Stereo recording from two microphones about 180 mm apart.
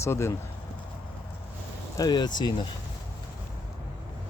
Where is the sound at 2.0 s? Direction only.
25° left (ahead or behind).